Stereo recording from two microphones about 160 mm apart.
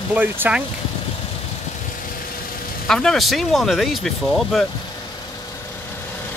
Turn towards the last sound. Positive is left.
turn(degrees=0)  # may be behind; listen again after turning